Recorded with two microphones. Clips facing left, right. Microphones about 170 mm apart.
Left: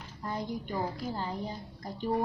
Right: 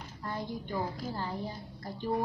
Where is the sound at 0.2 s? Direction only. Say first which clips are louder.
Left 2 dB; 20° left (ahead or behind).